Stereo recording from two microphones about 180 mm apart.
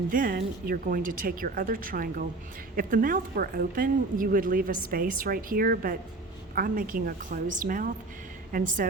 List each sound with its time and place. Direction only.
0.1 s a woman's voice: 50° right (ahead or behind)